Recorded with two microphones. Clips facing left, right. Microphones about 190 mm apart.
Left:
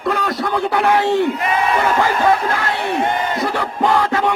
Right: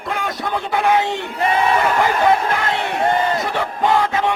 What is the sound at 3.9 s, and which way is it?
Music, 20° right (ahead or behind).